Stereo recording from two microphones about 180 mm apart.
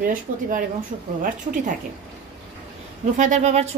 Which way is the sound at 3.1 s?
45° right (ahead or behind).